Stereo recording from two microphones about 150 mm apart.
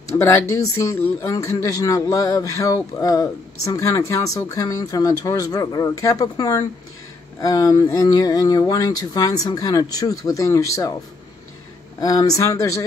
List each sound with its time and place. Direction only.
0.1 s a man's voice: 20° left (ahead or behind)
12.0 s a man's voice: 25° left (ahead or behind)